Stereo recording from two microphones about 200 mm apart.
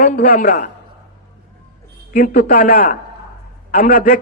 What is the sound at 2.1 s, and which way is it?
A man's voice, 40° left (ahead or behind).